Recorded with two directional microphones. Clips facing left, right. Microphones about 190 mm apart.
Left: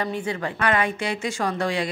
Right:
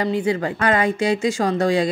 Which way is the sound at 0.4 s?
35° right (ahead or behind).